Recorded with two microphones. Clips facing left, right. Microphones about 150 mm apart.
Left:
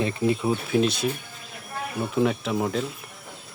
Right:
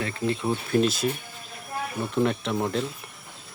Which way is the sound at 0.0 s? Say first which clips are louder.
Left 4 dB; 20° left (ahead or behind).